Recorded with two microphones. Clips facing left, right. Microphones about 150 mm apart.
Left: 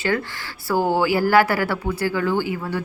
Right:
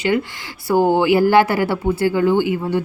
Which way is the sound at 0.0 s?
20° right (ahead or behind).